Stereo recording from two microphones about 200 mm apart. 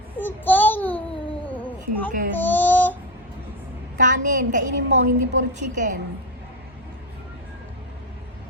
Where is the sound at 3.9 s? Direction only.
40° right (ahead or behind).